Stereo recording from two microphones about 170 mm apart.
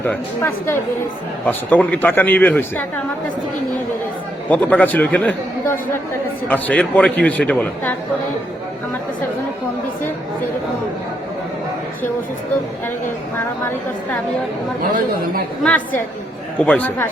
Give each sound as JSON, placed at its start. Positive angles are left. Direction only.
{"t": 0.0, "sound": "a man's voice", "side_deg": 15}
{"t": 4.4, "sound": "a man's voice", "side_deg": 10}
{"t": 14.8, "sound": "speech", "side_deg": -55}
{"t": 16.6, "sound": "a man's voice", "side_deg": 10}